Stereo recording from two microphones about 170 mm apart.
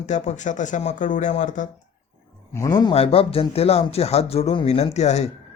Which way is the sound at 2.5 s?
15° left (ahead or behind).